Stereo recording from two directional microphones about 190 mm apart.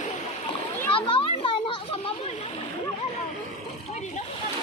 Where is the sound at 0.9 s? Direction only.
25° left (ahead or behind).